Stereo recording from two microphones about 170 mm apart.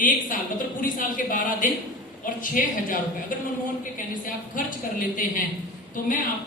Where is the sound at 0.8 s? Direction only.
55° left (ahead or behind).